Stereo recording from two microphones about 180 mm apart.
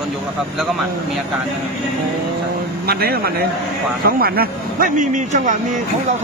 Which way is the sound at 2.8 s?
60° right (ahead or behind).